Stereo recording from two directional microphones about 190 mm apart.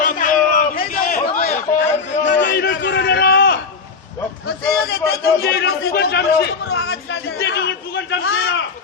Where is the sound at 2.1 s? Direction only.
70° left (ahead or behind).